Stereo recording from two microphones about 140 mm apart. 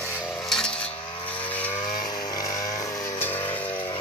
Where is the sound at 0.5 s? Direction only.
5° left (ahead or behind).